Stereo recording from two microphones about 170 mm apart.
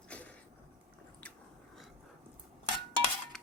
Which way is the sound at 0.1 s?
10° left (ahead or behind).